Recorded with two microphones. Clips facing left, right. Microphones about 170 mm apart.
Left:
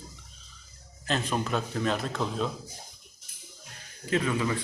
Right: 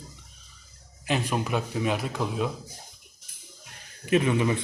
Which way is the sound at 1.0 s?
15° right (ahead or behind).